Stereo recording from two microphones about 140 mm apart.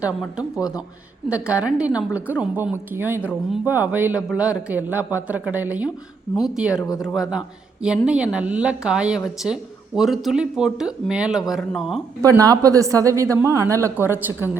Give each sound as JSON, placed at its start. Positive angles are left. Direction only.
{"t": 0.2, "sound": "speech", "side_deg": -5}
{"t": 12.2, "sound": "a woman's voice", "side_deg": -25}